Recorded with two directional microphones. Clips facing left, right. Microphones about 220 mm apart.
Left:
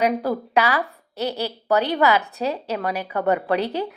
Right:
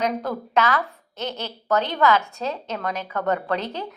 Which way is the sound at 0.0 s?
10° left (ahead or behind).